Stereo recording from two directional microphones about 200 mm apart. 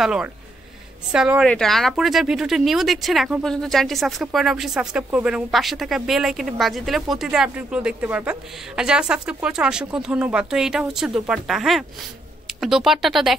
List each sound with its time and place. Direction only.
0.0 s speech: 5° right (ahead or behind)